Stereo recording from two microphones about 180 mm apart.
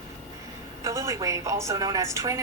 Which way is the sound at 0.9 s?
15° right (ahead or behind).